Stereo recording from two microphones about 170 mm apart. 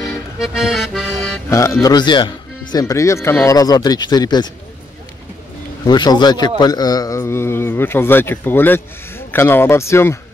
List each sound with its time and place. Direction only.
0.4 s music: 5° right (ahead or behind)
1.5 s speech: 15° left (ahead or behind)
5.9 s speech: 25° left (ahead or behind)